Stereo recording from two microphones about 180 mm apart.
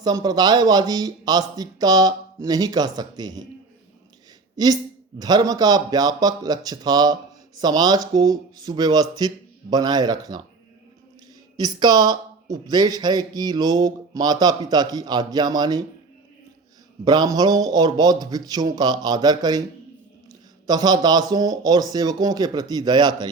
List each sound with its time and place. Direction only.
0.0 s speech: 20° right (ahead or behind)
4.5 s speech: 20° right (ahead or behind)
11.5 s speech: 20° right (ahead or behind)
17.1 s speech: 20° right (ahead or behind)
20.7 s speech: 25° right (ahead or behind)